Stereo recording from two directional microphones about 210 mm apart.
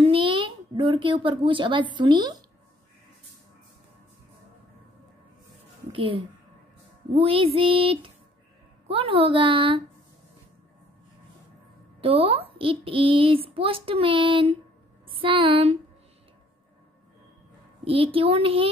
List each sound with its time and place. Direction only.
0.0 s a sound: 25° right (ahead or behind)
2.0 s a woman's voice: 20° right (ahead or behind)
5.9 s a woman's voice: 25° right (ahead or behind)
12.0 s a woman's voice: 25° right (ahead or behind)
17.8 s a woman's voice: 25° right (ahead or behind)